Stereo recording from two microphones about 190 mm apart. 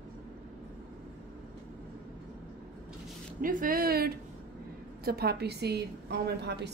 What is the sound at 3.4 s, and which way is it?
A woman's voice, 45° right (ahead or behind).